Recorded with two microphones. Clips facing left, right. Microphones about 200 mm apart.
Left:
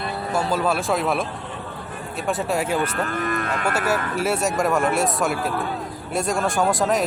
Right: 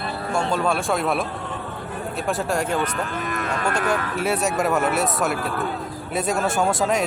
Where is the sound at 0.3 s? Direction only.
5° left (ahead or behind).